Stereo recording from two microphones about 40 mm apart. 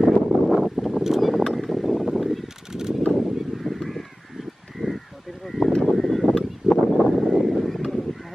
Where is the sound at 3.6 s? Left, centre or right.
Centre.